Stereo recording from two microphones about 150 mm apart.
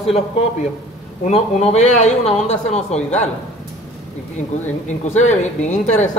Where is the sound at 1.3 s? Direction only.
45° left (ahead or behind).